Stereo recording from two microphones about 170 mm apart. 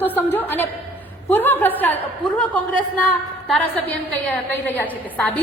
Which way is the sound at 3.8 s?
10° left (ahead or behind).